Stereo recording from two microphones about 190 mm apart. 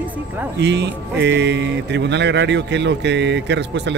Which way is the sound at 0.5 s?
65° right (ahead or behind).